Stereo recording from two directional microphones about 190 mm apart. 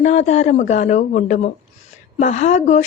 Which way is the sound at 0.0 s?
40° left (ahead or behind).